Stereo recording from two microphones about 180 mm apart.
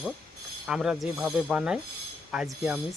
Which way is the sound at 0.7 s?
5° right (ahead or behind).